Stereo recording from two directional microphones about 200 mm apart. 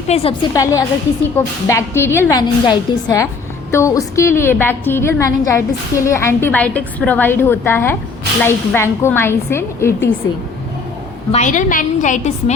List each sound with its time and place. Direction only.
0.1 s a woman's voice: 30° left (ahead or behind)
0.5 s a woman's voice: 15° left (ahead or behind)
11.3 s a woman's voice: 35° left (ahead or behind)